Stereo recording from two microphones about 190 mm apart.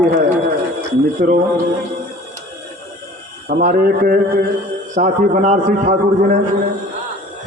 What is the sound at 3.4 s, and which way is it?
A man's voice, 50° right (ahead or behind).